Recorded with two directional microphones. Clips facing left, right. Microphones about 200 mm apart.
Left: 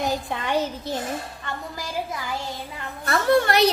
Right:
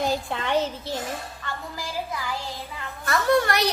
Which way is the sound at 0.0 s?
15° left (ahead or behind).